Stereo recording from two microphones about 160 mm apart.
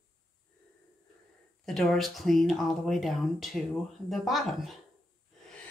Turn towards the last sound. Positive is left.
turn(degrees=0)  # may be behind; listen again after turning